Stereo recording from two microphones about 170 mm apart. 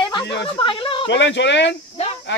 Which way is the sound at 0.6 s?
30° left (ahead or behind).